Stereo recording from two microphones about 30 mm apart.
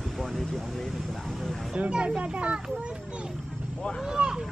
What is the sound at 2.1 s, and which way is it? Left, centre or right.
Speech, right.